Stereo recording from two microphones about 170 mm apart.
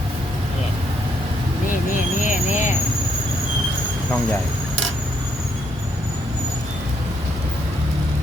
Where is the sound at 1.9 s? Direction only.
50° left (ahead or behind).